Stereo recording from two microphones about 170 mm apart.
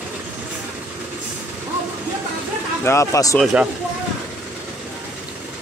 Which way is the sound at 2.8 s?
20° left (ahead or behind).